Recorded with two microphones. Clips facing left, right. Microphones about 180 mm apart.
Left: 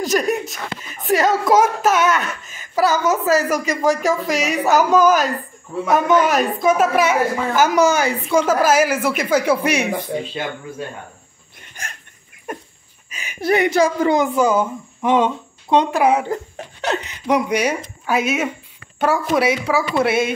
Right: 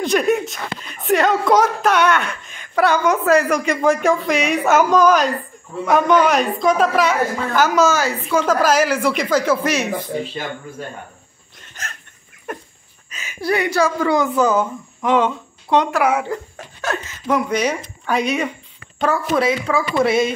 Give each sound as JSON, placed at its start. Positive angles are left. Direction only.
{"t": 0.1, "sound": "a woman's voice", "side_deg": 0}
{"t": 11.6, "sound": "hiccup", "side_deg": 15}
{"t": 13.1, "sound": "a woman's voice", "side_deg": 15}